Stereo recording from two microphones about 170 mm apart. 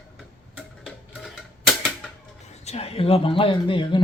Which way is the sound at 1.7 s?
5° left (ahead or behind).